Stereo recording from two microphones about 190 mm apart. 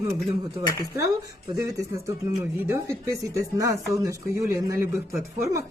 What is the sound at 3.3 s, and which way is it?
Speech, 15° right (ahead or behind).